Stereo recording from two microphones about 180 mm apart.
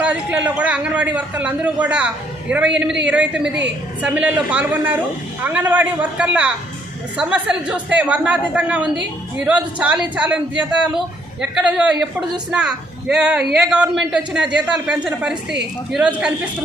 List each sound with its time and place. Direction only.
0.0 s a man's voice: 5° right (ahead or behind)